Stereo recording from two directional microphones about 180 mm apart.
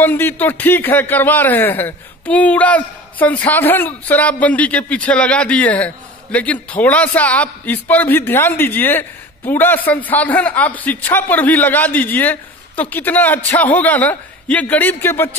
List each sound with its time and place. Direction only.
0.0 s speech: 10° left (ahead or behind)